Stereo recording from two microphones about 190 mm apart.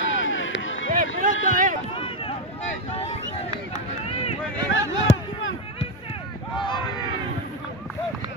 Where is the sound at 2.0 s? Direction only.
25° left (ahead or behind).